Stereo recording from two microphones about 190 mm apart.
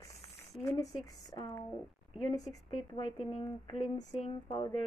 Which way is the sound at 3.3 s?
35° left (ahead or behind).